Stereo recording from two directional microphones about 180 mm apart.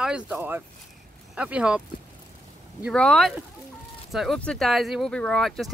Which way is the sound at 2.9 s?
5° left (ahead or behind).